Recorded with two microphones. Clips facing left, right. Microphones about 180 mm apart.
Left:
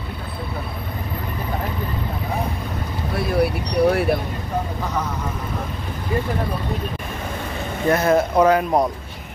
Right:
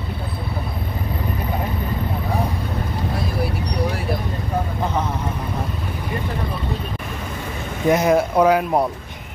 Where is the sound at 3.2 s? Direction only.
60° left (ahead or behind).